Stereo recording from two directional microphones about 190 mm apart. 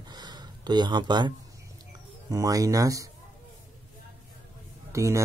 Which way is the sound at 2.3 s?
15° right (ahead or behind).